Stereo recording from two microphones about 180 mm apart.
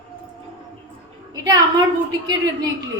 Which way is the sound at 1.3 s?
20° right (ahead or behind).